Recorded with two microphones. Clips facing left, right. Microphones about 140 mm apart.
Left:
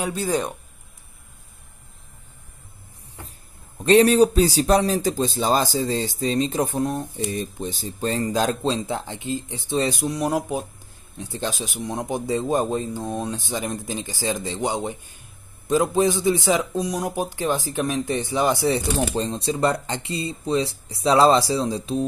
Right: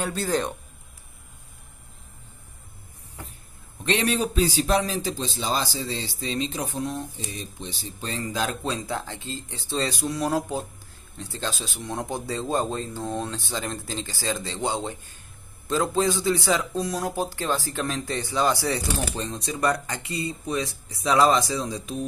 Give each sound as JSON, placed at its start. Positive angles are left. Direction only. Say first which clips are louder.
{"t": 0.0, "sound": "speech", "louder": "left 2 dB", "side_deg": 10}
{"t": 3.8, "sound": "a man's voice", "louder": "left 10 dB", "side_deg": 35}
{"t": 8.6, "sound": "speech", "louder": "left 5 dB", "side_deg": 25}